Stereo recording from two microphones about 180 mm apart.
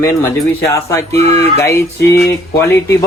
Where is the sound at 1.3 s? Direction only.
15° left (ahead or behind).